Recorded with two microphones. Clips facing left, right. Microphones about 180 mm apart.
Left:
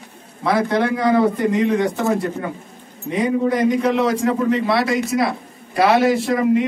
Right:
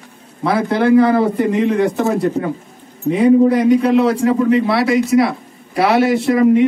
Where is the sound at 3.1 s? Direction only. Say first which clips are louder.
Right 7 dB; 30° right (ahead or behind).